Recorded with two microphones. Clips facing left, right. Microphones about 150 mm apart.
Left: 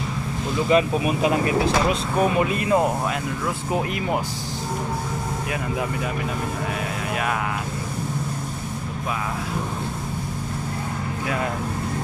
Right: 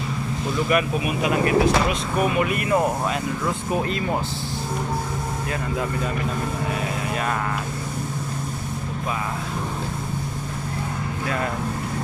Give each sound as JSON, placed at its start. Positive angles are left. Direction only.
{"t": 0.7, "sound": "speech", "side_deg": 30}
{"t": 2.4, "sound": "speech", "side_deg": 25}